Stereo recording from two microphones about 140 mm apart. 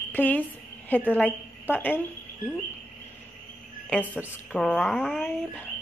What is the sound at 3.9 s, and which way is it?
A woman's voice, 10° left (ahead or behind).